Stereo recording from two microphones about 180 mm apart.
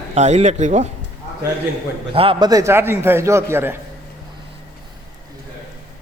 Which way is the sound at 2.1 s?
30° right (ahead or behind).